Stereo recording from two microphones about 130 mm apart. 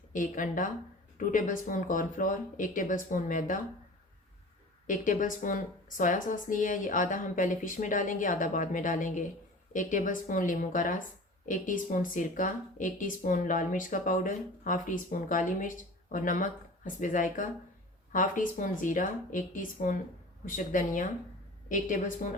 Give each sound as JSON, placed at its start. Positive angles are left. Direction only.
{"t": 0.1, "sound": "a woman's voice", "side_deg": 85}
{"t": 4.9, "sound": "a woman's voice", "side_deg": 90}
{"t": 9.7, "sound": "a woman's voice", "side_deg": 90}